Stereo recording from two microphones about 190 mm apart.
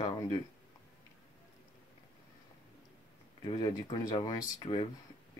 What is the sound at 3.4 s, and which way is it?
Speech, 25° left (ahead or behind).